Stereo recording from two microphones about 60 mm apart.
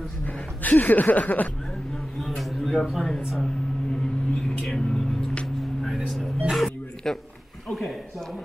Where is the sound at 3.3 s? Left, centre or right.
Centre.